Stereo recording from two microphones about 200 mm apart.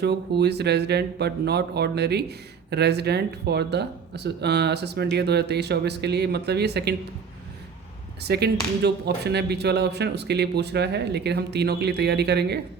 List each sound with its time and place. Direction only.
0.0 s speech: 55° right (ahead or behind)
8.2 s speech: 55° right (ahead or behind)